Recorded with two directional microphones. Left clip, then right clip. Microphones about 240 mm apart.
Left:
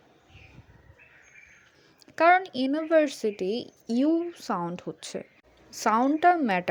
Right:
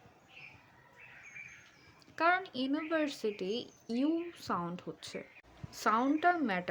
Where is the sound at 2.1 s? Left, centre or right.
Left.